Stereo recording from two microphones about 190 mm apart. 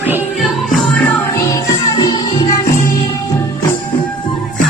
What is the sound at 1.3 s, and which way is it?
Music, 20° left (ahead or behind).